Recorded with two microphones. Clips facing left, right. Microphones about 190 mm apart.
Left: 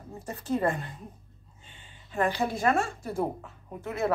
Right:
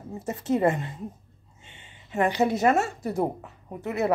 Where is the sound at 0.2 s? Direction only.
25° right (ahead or behind).